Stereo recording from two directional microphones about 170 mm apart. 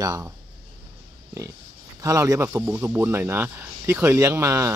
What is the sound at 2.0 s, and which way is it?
Speech, 20° right (ahead or behind).